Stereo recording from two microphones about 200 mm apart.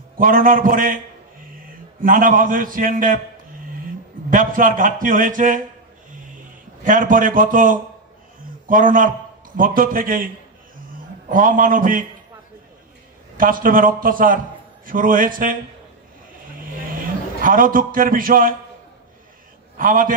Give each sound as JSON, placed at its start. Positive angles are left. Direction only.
{"t": 0.2, "sound": "a man's voice", "side_deg": -45}
{"t": 2.0, "sound": "a man's voice", "side_deg": -45}
{"t": 4.3, "sound": "a man's voice", "side_deg": -45}
{"t": 6.8, "sound": "a man's voice", "side_deg": -40}
{"t": 13.4, "sound": "a man's voice", "side_deg": -45}
{"t": 16.9, "sound": "a man's voice", "side_deg": -45}
{"t": 19.8, "sound": "a man's voice", "side_deg": -45}